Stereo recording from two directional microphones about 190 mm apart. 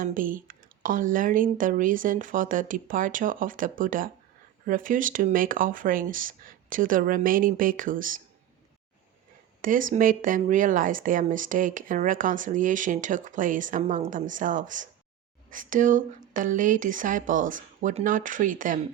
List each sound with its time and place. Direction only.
0.0 s speech: 45° right (ahead or behind)
9.6 s speech: 45° right (ahead or behind)